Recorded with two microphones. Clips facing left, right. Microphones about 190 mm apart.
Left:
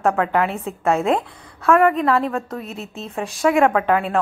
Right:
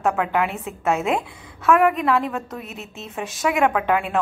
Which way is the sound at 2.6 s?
35° left (ahead or behind).